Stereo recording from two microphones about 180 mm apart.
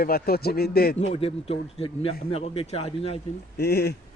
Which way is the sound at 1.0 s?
35° left (ahead or behind).